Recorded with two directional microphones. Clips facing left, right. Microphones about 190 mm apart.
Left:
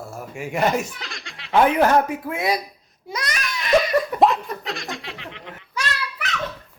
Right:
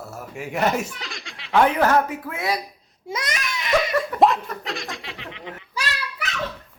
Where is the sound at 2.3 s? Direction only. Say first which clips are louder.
Left 3 dB; 15° left (ahead or behind).